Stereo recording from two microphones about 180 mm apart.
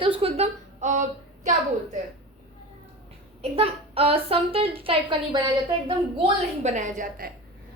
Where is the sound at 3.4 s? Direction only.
30° right (ahead or behind).